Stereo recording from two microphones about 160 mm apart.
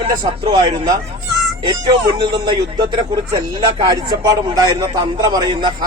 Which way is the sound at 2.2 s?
30° right (ahead or behind).